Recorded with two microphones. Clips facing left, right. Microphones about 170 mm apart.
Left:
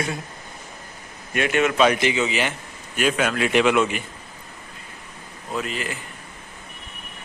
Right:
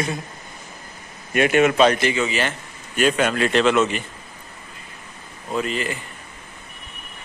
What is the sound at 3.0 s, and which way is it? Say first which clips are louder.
Speech: right 3 dB; 5° left (ahead or behind).